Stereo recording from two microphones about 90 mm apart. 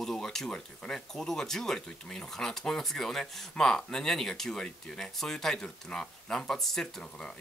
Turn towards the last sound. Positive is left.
turn(degrees=5)  # may be behind; listen again after turning